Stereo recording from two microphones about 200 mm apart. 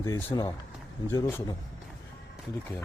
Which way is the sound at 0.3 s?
20° left (ahead or behind).